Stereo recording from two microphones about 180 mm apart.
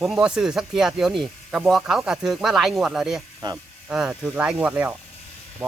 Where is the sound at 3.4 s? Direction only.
25° right (ahead or behind).